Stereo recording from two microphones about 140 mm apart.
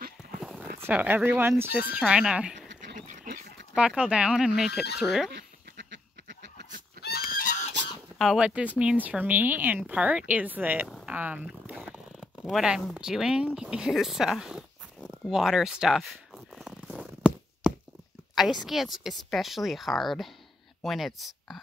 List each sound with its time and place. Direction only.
0.4 s horse: centre (ahead or behind)
0.7 s speech: 15° right (ahead or behind)
3.7 s a woman's voice: 5° right (ahead or behind)
7.1 s goose: 90° left
8.2 s speech: 5° right (ahead or behind)
11.1 s zipper: 10° right (ahead or behind)
18.3 s a woman's voice: centre (ahead or behind)